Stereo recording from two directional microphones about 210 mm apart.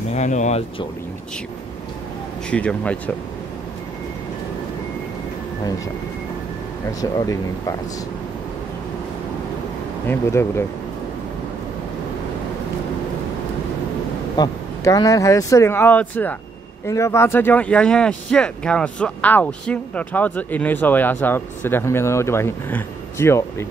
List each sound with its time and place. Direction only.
0.1 s speech: 35° left (ahead or behind)
2.5 s speech: 5° left (ahead or behind)
7.0 s speech: 15° left (ahead or behind)
14.3 s speech: 15° left (ahead or behind)